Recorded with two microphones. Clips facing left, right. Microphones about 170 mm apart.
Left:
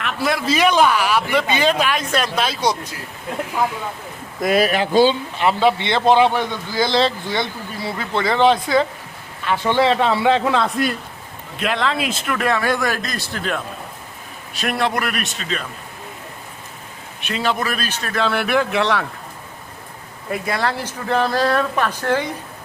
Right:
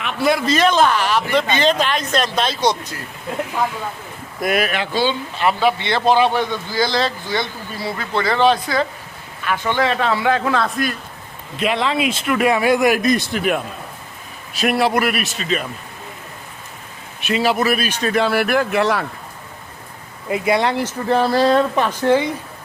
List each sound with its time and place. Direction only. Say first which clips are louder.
0.0 s a man's voice: right 3 dB; centre (ahead or behind)
4.4 s speech: left 3 dB; 25° left (ahead or behind)
5.4 s a man's voice: even; 20° left (ahead or behind)
11.6 s speech: right 2 dB; centre (ahead or behind)
14.5 s a man's voice: right 4 dB; 5° right (ahead or behind)
17.2 s speech: right 4 dB; 5° right (ahead or behind)
18.3 s a man's voice: right 2 dB; 5° right (ahead or behind)
20.3 s speech: right 5 dB; 20° right (ahead or behind)